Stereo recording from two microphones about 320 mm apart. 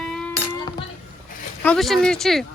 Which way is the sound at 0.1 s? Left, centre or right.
Centre.